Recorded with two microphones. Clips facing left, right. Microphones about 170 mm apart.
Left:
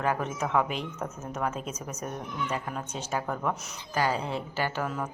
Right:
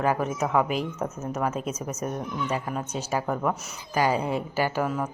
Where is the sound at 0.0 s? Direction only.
5° right (ahead or behind).